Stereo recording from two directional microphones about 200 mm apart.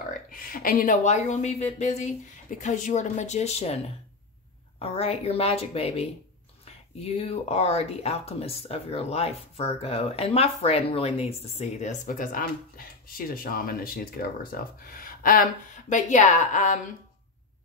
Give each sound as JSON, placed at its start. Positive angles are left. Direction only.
{"t": 0.3, "sound": "speech", "side_deg": 45}